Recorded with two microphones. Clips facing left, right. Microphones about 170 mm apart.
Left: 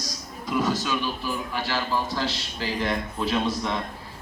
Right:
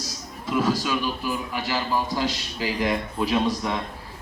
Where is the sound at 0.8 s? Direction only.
10° right (ahead or behind).